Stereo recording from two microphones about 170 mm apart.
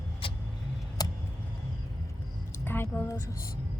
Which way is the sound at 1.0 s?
25° left (ahead or behind).